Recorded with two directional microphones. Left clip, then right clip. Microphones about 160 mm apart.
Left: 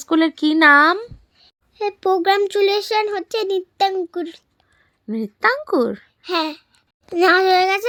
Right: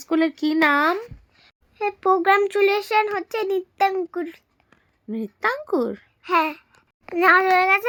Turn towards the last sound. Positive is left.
turn(degrees=30)  # may be behind; listen again after turning